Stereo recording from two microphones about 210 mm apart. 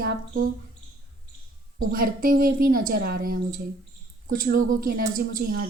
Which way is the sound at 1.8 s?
45° right (ahead or behind).